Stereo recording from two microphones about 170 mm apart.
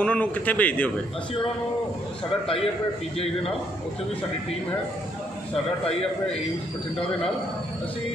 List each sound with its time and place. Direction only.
0.0 s a man's voice: 10° left (ahead or behind)
2.4 s a man's voice: 35° left (ahead or behind)